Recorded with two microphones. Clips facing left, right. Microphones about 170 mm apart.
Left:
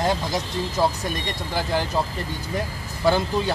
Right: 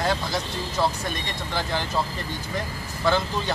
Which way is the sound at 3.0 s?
10° left (ahead or behind).